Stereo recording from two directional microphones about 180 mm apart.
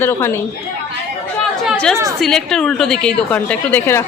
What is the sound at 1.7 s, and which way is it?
A woman's voice, 5° left (ahead or behind).